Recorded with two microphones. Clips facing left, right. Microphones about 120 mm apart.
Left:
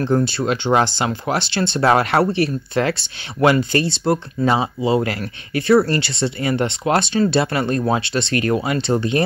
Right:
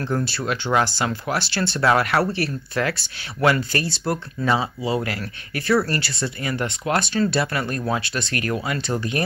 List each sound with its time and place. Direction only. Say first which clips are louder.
0.0 s speech: left 6 dB; 20° left (ahead or behind)